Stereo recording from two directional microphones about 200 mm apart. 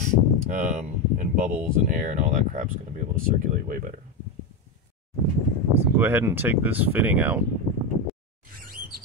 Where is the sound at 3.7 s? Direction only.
40° right (ahead or behind).